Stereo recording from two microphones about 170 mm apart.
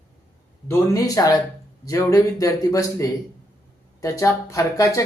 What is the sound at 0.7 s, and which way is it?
Speech, 20° left (ahead or behind).